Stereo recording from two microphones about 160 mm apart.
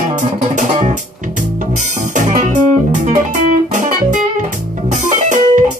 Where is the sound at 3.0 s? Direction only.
50° right (ahead or behind).